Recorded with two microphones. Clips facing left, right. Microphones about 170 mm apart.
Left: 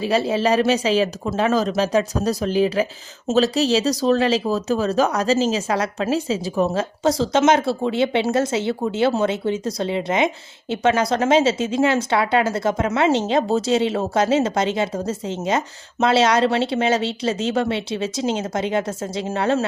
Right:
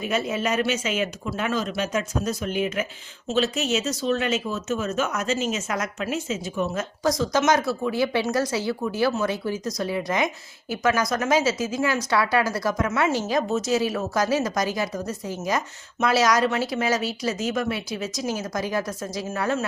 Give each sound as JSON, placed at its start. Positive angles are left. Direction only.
{"t": 0.0, "sound": "speech", "side_deg": 30}